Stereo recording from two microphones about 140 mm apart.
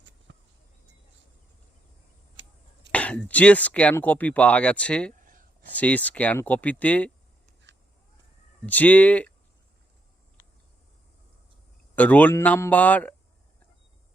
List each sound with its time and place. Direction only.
2.9 s speech: 10° left (ahead or behind)
5.2 s a sound: 75° right (ahead or behind)
5.7 s speech: 10° left (ahead or behind)
8.6 s speech: 10° left (ahead or behind)
11.9 s speech: 10° left (ahead or behind)